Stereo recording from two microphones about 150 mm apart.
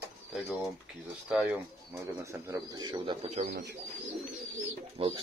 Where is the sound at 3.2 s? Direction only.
50° right (ahead or behind).